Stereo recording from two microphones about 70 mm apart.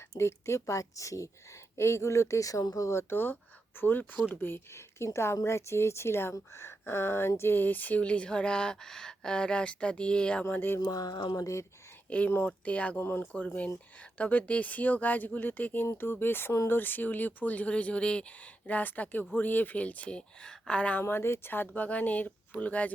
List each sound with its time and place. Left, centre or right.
0.2 s a woman's voice: left
2.9 s speech: left; by 10.4 s centre
10.5 s speech: left
10.8 s speech: left
12.0 s speech: centre
13.0 s speech: left
14.0 s speech: left
21.0 s speech: left
21.7 s speech: centre